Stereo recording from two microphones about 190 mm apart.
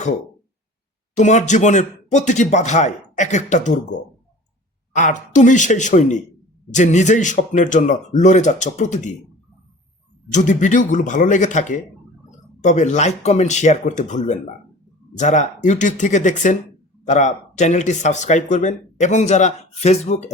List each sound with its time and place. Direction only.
1.1 s speech: 40° left (ahead or behind)
4.9 s speech: 40° left (ahead or behind)
10.3 s speech: 40° left (ahead or behind)